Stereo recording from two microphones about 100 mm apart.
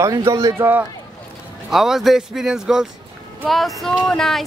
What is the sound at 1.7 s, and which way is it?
Speech, 5° right (ahead or behind).